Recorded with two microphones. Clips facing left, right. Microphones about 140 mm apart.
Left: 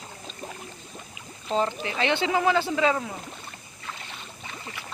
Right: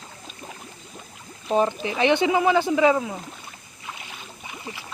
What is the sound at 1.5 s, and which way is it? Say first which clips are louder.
Speech: right 4 dB; 15° right (ahead or behind).